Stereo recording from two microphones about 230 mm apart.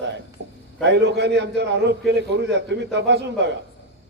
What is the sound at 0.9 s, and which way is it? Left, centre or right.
A man's voice, right.